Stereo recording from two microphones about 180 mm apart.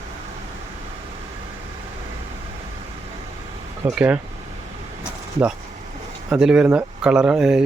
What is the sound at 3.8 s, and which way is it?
Speech, 10° right (ahead or behind).